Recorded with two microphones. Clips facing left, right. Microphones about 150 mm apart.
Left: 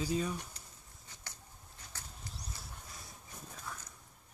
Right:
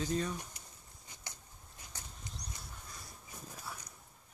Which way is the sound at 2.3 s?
5° left (ahead or behind).